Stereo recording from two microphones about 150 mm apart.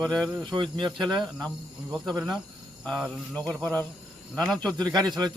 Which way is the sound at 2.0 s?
30° right (ahead or behind).